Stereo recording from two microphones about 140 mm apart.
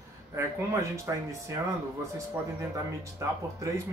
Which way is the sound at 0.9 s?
20° right (ahead or behind).